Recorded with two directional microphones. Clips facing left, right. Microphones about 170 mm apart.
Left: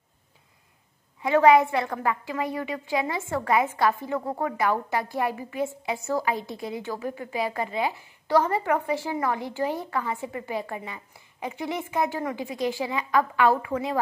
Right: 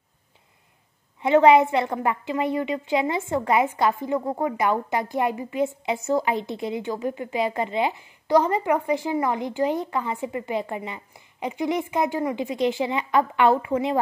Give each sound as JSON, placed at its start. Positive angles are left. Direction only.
{"t": 1.2, "sound": "a woman's voice", "side_deg": -25}